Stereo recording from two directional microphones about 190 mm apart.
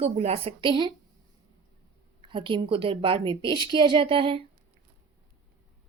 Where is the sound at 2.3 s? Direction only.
25° right (ahead or behind).